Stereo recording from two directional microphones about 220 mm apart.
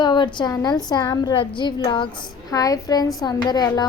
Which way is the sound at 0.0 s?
20° left (ahead or behind).